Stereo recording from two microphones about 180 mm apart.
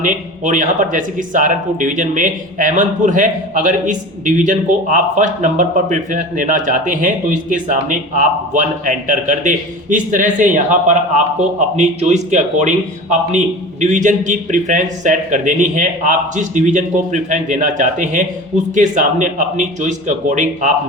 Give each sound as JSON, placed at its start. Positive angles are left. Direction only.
{"t": 0.0, "sound": "speech", "side_deg": -45}